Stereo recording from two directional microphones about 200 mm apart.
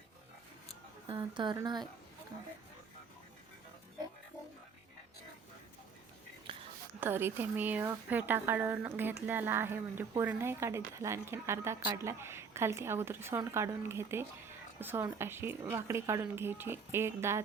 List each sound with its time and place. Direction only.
1.0 s speech: 25° right (ahead or behind)
6.5 s a sound: 25° right (ahead or behind)
7.0 s a woman's voice: 10° right (ahead or behind)